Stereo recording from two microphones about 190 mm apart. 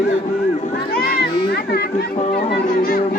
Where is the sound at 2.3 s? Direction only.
55° left (ahead or behind).